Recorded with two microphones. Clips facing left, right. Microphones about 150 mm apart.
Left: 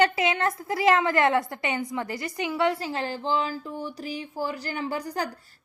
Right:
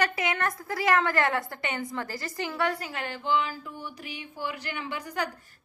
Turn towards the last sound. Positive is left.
turn(degrees=40)  # may be behind; listen again after turning